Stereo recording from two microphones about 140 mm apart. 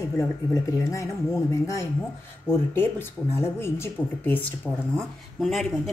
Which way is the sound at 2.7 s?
15° left (ahead or behind).